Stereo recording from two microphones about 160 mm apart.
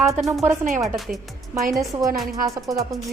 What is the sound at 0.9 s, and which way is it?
Speech, centre (ahead or behind).